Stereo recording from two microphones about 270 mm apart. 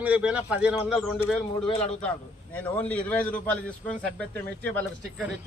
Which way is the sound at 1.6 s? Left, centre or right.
Left.